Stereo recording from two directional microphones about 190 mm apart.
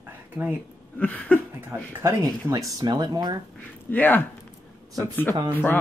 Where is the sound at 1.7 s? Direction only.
15° right (ahead or behind).